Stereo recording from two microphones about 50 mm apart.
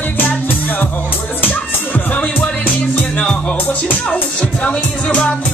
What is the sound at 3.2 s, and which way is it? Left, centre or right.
Music, centre.